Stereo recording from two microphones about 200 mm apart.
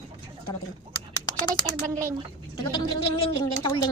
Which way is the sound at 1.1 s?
20° left (ahead or behind).